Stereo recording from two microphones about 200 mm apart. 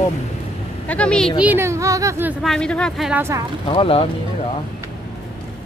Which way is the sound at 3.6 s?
25° left (ahead or behind).